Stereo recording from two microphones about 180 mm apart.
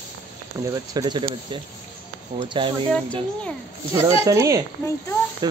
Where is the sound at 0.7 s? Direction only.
20° right (ahead or behind).